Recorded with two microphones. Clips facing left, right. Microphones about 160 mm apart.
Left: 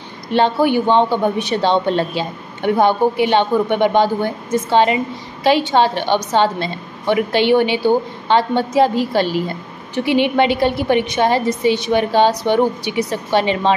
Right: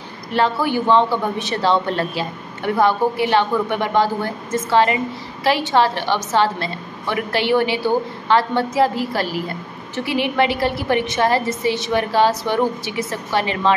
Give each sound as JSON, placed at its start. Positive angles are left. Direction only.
{"t": 0.3, "sound": "speech", "side_deg": 25}